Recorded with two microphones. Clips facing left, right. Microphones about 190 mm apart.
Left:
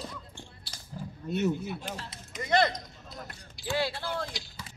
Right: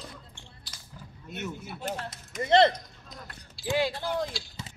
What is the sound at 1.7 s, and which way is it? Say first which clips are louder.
Speech: right 3 dB; 50° right (ahead or behind).